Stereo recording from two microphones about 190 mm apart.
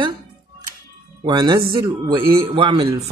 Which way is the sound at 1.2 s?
25° right (ahead or behind).